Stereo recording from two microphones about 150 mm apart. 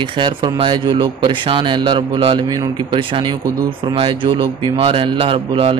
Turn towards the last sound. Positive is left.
turn(degrees=-35)  # may be behind; listen again after turning